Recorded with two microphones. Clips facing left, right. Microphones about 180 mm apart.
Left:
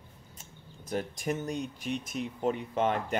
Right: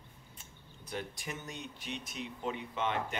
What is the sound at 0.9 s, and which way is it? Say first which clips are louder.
Speech: left 9 dB; 45° left (ahead or behind).